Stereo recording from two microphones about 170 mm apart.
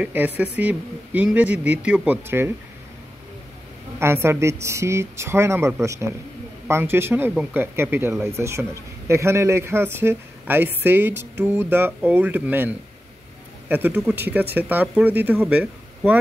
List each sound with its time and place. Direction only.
0.0 s speech: 10° right (ahead or behind)
4.0 s speech: 15° right (ahead or behind)